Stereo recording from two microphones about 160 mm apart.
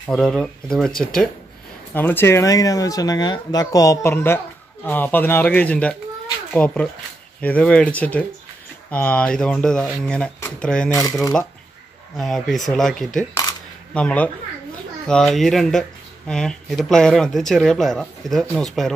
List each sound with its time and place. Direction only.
0.0 s speech: 5° left (ahead or behind)
10.9 s speech: 20° left (ahead or behind)
12.2 s speech: centre (ahead or behind)